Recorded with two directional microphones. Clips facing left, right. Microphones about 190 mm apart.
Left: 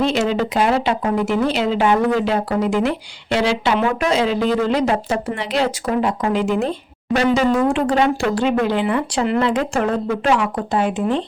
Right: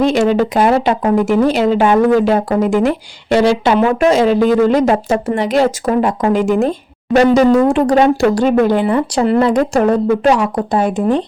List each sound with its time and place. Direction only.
0.0 s speech: 50° right (ahead or behind)